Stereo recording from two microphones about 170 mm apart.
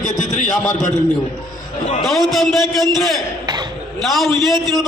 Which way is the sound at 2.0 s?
Centre (ahead or behind).